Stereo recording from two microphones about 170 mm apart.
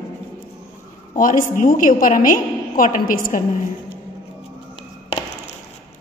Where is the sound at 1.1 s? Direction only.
50° left (ahead or behind).